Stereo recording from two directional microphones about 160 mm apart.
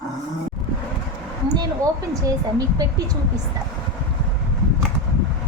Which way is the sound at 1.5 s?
20° right (ahead or behind).